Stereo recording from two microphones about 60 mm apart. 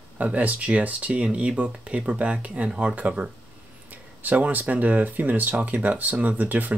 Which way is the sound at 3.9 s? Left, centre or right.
Right.